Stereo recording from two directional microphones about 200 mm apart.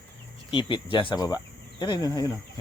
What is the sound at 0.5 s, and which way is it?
Speech, 25° left (ahead or behind).